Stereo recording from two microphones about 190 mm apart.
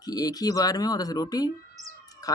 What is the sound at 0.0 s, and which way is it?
Speech, 20° left (ahead or behind).